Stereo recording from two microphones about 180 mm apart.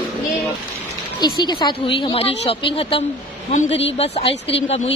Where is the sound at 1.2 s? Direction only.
25° left (ahead or behind).